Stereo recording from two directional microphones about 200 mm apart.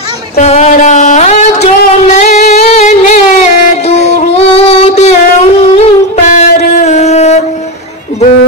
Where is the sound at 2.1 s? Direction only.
35° left (ahead or behind).